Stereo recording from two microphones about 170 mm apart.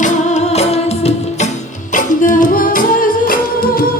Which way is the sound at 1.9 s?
50° left (ahead or behind).